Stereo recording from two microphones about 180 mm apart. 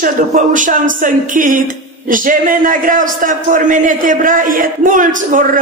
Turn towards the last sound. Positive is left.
turn(degrees=-45)  # may be behind; listen again after turning